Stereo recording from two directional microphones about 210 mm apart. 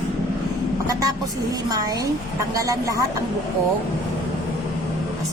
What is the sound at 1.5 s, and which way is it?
A woman's voice, 15° right (ahead or behind).